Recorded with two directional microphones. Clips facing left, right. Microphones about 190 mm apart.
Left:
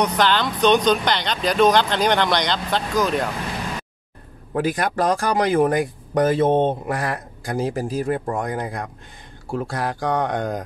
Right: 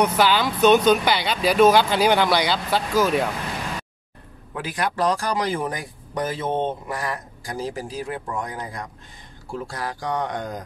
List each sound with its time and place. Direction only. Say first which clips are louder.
0.0 s speech: even; 5° right (ahead or behind)
4.6 s speech: left 4 dB; 45° left (ahead or behind)